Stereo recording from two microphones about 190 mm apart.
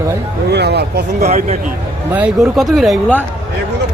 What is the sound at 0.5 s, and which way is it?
Speech, 60° right (ahead or behind).